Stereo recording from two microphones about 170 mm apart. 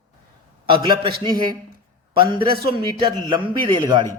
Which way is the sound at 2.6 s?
30° right (ahead or behind).